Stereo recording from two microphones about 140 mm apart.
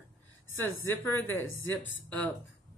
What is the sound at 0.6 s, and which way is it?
A woman's voice, 15° left (ahead or behind).